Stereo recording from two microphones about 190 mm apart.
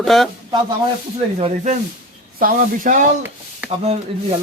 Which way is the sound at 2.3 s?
45° right (ahead or behind).